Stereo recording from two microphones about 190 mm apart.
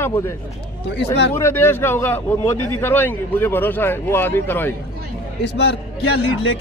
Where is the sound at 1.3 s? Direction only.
10° left (ahead or behind).